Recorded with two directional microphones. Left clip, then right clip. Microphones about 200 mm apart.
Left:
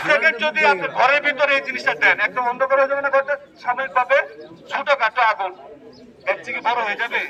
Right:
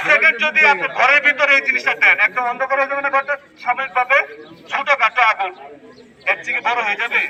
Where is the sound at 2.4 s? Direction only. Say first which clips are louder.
Even; 15° left (ahead or behind).